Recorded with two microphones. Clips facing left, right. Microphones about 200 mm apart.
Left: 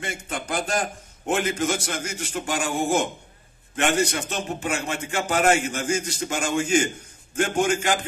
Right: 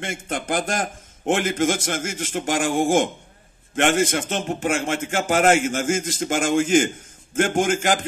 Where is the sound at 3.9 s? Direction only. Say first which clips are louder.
Right 2 dB; 45° right (ahead or behind).